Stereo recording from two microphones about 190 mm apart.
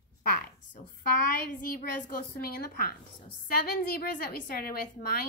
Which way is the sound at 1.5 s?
50° left (ahead or behind).